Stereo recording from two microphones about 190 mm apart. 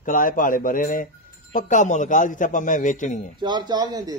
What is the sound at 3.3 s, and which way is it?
Speech, 25° right (ahead or behind).